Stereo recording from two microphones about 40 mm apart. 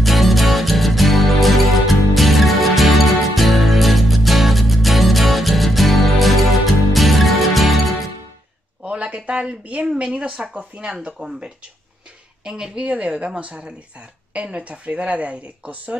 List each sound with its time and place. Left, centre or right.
0.0 s music: centre
8.8 s a sound: right
9.9 s speech: right
12.4 s speech: right
12.8 s a woman's voice: right